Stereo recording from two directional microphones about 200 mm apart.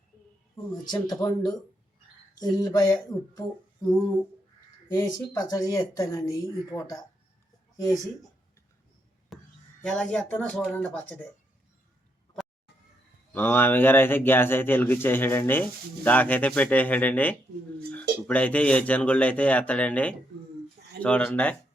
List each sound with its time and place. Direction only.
0.5 s speech: 20° left (ahead or behind)
4.9 s speech: 15° left (ahead or behind)
9.3 s a sound: centre (ahead or behind)
9.8 s speech: 5° left (ahead or behind)
13.3 s speech: 10° left (ahead or behind)